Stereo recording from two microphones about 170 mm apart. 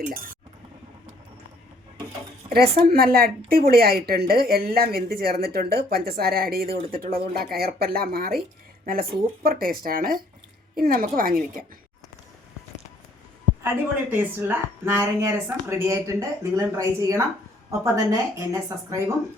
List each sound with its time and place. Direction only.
2.5 s speech: 65° right (ahead or behind)
14.1 s speech: 10° right (ahead or behind)